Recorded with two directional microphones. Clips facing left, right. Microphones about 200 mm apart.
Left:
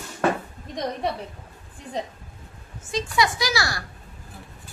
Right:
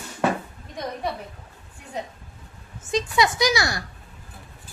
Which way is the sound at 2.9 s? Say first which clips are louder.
Right 2 dB; 20° right (ahead or behind).